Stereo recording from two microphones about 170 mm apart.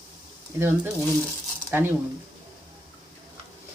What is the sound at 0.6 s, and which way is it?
Speech, 15° right (ahead or behind).